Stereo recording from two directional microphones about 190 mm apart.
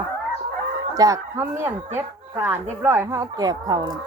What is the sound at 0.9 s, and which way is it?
Speech, 20° right (ahead or behind).